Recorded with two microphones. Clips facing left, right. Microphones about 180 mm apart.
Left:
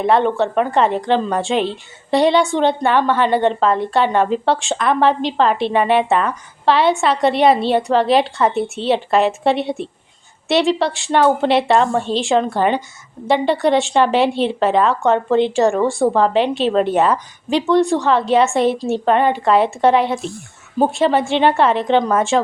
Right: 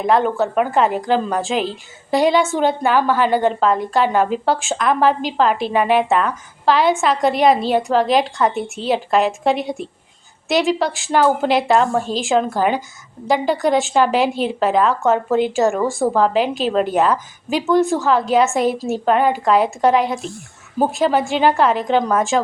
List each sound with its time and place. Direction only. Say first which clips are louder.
0.1 s a woman's voice: even; 5° right (ahead or behind)